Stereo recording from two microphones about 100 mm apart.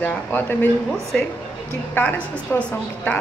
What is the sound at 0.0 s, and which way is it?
Speech, 20° left (ahead or behind).